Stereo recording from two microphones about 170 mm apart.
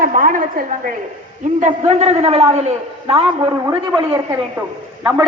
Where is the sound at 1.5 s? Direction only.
45° right (ahead or behind).